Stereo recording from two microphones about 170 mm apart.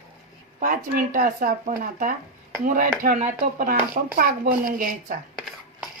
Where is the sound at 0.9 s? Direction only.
50° right (ahead or behind).